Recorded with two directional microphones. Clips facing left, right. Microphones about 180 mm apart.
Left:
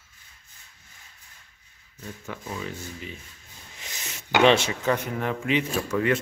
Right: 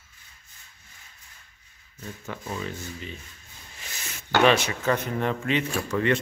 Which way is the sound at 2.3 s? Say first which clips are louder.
Right 1 dB; 10° left (ahead or behind).